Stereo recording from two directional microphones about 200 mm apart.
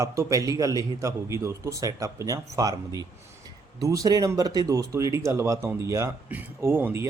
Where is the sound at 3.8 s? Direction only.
15° right (ahead or behind).